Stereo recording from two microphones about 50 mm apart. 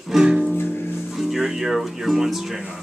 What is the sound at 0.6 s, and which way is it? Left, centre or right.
Music, left.